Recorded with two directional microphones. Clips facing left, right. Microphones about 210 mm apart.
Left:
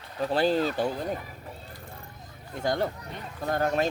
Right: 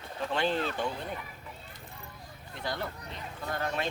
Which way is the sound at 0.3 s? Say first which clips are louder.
Left 6 dB; 40° left (ahead or behind).